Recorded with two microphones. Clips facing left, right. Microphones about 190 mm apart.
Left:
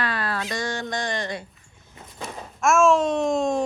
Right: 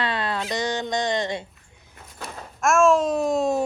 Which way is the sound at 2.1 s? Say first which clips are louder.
Left 2 dB; centre (ahead or behind).